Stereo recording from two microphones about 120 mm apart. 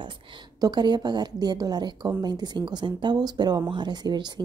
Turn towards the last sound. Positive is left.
turn(degrees=-40)  # may be behind; listen again after turning